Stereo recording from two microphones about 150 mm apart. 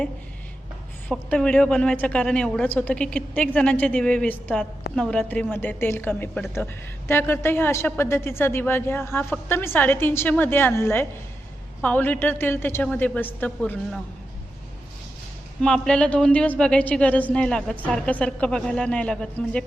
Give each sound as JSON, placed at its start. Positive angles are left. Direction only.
{"t": 1.0, "sound": "a woman's voice", "side_deg": 5}
{"t": 15.6, "sound": "a woman's voice", "side_deg": 5}